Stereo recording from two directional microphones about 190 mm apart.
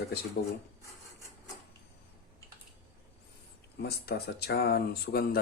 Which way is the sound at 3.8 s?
55° left (ahead or behind).